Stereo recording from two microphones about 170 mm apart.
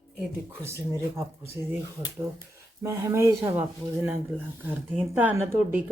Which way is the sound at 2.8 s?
15° right (ahead or behind).